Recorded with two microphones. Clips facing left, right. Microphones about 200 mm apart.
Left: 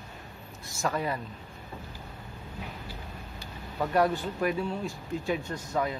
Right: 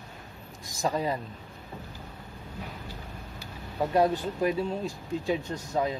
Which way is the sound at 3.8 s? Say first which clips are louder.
Right 1 dB; 20° right (ahead or behind).